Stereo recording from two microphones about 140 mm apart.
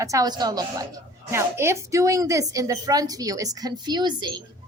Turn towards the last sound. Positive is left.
turn(degrees=-30)  # may be behind; listen again after turning